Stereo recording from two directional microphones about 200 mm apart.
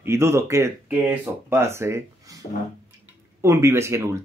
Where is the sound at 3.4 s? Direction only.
15° right (ahead or behind).